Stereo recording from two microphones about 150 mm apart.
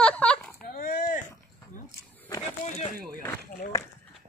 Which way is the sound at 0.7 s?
70° left (ahead or behind).